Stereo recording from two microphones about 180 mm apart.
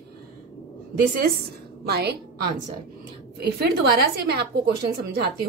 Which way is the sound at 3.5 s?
60° right (ahead or behind).